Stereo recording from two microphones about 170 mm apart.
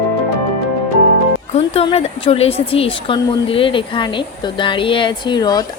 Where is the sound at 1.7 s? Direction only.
35° left (ahead or behind).